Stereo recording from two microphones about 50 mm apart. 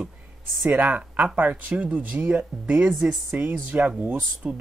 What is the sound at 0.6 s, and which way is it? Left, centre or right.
Speech, right.